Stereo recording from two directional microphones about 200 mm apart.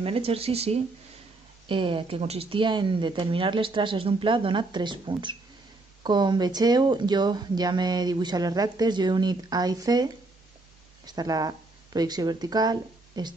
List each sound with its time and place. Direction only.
0.0 s speech: 30° right (ahead or behind)